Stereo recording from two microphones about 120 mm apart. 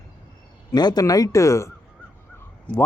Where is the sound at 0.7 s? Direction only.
35° left (ahead or behind).